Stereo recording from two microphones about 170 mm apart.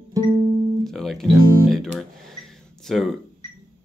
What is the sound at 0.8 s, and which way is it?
Guitar, centre (ahead or behind).